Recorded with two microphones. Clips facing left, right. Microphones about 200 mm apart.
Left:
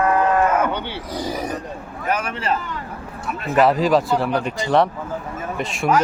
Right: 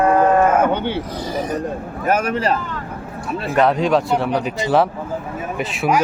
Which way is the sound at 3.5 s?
Centre (ahead or behind).